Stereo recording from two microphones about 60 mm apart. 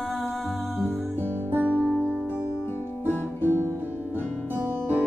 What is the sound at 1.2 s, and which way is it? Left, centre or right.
Music, right.